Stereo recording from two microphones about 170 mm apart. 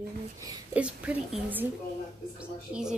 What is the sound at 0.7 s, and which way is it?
Speech, 10° right (ahead or behind).